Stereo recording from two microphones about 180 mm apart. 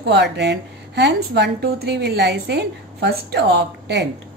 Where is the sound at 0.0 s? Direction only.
70° right (ahead or behind).